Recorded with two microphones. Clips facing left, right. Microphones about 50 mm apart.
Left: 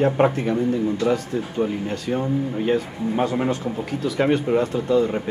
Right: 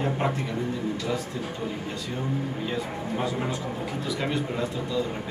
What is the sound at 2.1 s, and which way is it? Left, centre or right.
A man's voice, left.